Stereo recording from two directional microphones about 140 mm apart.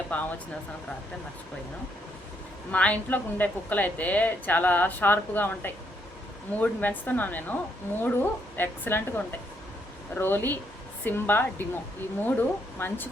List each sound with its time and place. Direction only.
0.1 s speech: 10° left (ahead or behind)
2.7 s a woman's voice: 10° left (ahead or behind)